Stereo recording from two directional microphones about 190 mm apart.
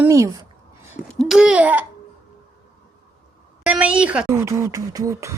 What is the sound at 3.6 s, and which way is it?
Speech, 5° right (ahead or behind).